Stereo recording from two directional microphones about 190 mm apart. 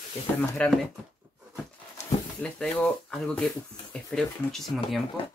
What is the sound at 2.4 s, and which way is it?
Speech, 5° left (ahead or behind).